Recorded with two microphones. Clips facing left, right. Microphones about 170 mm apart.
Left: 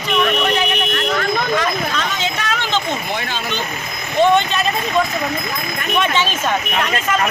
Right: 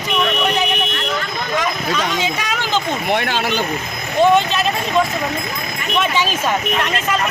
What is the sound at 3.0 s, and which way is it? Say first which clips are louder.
Speech: right 5 dB; 65° right (ahead or behind).